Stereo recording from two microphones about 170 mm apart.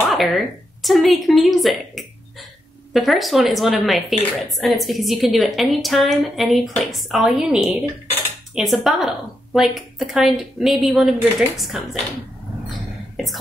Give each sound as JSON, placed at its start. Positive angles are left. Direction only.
{"t": 0.1, "sound": "a woman's voice", "side_deg": 0}